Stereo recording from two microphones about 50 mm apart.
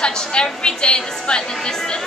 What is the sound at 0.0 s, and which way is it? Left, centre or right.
A woman's voice, centre.